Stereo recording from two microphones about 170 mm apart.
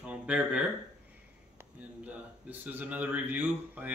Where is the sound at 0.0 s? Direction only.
5° right (ahead or behind).